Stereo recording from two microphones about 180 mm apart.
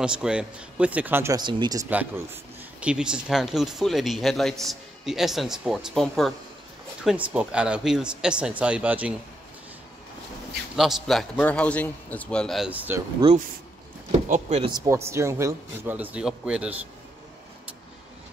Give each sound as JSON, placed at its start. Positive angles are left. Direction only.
{"t": 0.0, "sound": "speech", "side_deg": -5}
{"t": 1.9, "sound": "speech", "side_deg": -10}
{"t": 10.8, "sound": "speech", "side_deg": 0}
{"t": 14.3, "sound": "speech", "side_deg": -35}
{"t": 14.9, "sound": "speech", "side_deg": -15}